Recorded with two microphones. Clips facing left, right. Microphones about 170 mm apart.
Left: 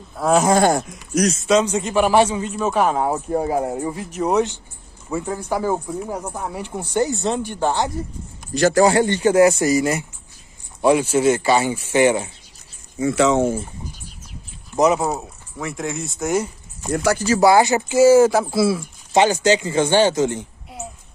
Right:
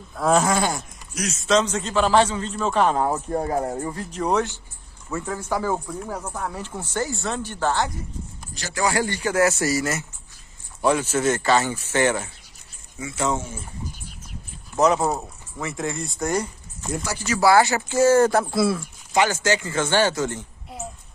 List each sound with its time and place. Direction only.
0.1 s speech: 5° left (ahead or behind)
0.6 s speech: 50° left (ahead or behind)
1.5 s speech: 10° left (ahead or behind)
8.5 s speech: 55° left (ahead or behind)
8.8 s speech: 25° left (ahead or behind)
13.0 s speech: 80° left
14.8 s speech: 5° left (ahead or behind)
16.9 s speech: 70° left (ahead or behind)
17.4 s speech: 20° left (ahead or behind)
19.1 s speech: 20° left (ahead or behind)